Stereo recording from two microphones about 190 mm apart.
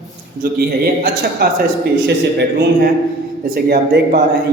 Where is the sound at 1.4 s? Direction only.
55° right (ahead or behind).